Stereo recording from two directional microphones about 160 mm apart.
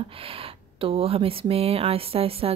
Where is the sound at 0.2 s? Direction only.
35° right (ahead or behind).